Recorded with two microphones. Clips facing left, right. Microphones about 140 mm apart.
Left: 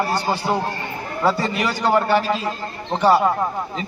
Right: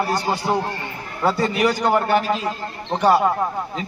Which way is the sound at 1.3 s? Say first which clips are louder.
Right 2 dB; 15° right (ahead or behind).